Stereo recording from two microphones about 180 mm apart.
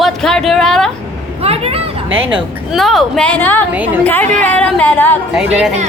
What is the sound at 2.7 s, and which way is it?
Speech, centre (ahead or behind).